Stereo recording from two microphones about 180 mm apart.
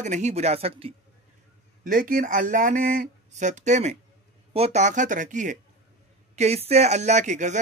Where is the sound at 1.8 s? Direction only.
50° right (ahead or behind).